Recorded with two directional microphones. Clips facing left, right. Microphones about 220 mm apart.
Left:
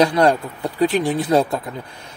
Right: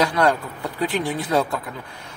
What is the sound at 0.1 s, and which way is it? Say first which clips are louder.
Speech: left 4 dB; 20° left (ahead or behind).